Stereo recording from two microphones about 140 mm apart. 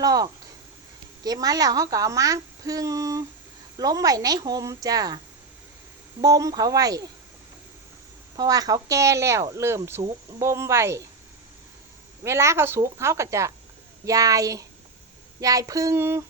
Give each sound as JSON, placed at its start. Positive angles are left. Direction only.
{"t": 0.0, "sound": "speech", "side_deg": -25}
{"t": 6.2, "sound": "speech", "side_deg": -25}
{"t": 8.4, "sound": "speech", "side_deg": -25}
{"t": 12.2, "sound": "speech", "side_deg": -20}